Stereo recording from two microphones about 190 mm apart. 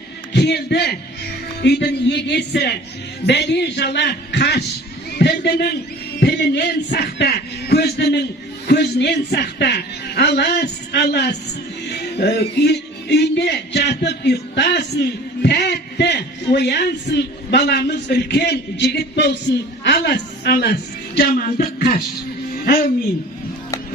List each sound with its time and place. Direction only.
0.3 s a sound: 60° left (ahead or behind)
11.9 s speech: 60° left (ahead or behind)
15.4 s a sound: 60° left (ahead or behind)
19.8 s a woman's voice: 60° left (ahead or behind)
21.2 s music: 50° left (ahead or behind)
22.6 s speech: 50° left (ahead or behind)